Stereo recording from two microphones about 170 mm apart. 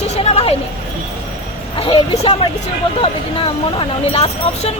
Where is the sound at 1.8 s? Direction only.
35° left (ahead or behind).